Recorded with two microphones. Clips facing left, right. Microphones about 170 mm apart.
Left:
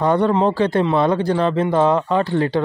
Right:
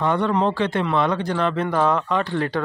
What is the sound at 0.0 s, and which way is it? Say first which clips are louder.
Speech: left 4 dB; 35° left (ahead or behind).